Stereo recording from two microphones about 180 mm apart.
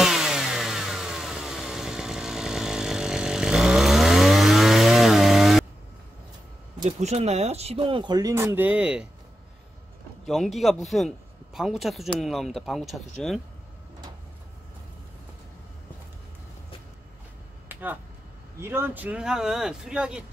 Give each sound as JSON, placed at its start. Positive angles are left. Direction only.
{"t": 0.0, "sound": "chainsaw", "side_deg": 0}
{"t": 6.8, "sound": "speech", "side_deg": -35}
{"t": 10.2, "sound": "a man's voice", "side_deg": 0}
{"t": 17.6, "sound": "a sound", "side_deg": -10}
{"t": 18.6, "sound": "speech", "side_deg": -15}